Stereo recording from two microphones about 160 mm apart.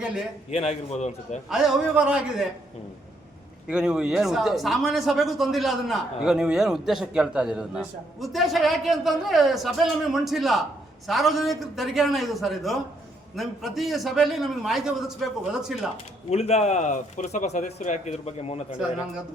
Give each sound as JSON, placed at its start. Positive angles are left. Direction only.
{"t": 0.0, "sound": "a man's voice", "side_deg": -5}
{"t": 0.5, "sound": "speech", "side_deg": 40}
{"t": 1.5, "sound": "a man's voice", "side_deg": -5}
{"t": 3.7, "sound": "a man's voice", "side_deg": -5}
{"t": 16.3, "sound": "speech", "side_deg": 40}